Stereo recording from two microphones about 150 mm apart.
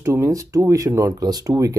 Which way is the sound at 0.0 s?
20° right (ahead or behind).